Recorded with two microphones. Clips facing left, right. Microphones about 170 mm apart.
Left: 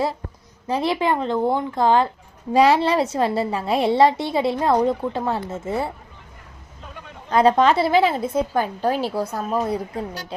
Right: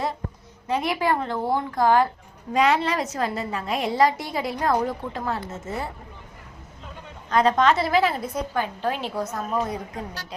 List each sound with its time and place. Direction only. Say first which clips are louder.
0.7 s a woman's voice: left 2 dB; 30° left (ahead or behind)
7.3 s a woman's voice: left 3 dB; 30° left (ahead or behind)
8.5 s a woman's voice: left 5 dB; 40° left (ahead or behind)